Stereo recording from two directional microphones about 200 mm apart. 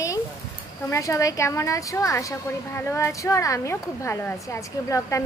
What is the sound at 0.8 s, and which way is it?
A woman's voice, 15° left (ahead or behind).